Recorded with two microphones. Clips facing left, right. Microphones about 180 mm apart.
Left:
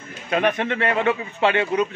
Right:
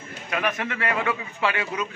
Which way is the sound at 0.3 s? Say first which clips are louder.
Left 6 dB; 30° left (ahead or behind).